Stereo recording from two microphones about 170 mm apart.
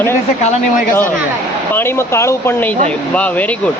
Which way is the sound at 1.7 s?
15° left (ahead or behind).